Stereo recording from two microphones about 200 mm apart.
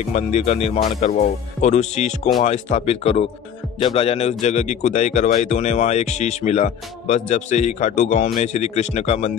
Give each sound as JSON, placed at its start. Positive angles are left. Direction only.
{"t": 0.0, "sound": "speech", "side_deg": 35}